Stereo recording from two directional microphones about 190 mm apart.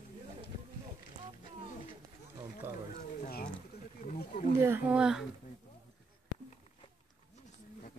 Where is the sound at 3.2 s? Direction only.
50° left (ahead or behind).